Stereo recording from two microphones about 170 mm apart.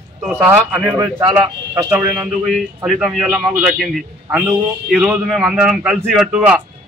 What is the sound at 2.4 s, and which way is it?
A man's voice, centre (ahead or behind).